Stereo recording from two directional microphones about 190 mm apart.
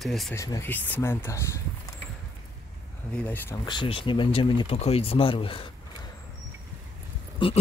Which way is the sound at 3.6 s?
25° left (ahead or behind).